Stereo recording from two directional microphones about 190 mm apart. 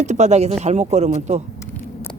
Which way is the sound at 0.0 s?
35° right (ahead or behind).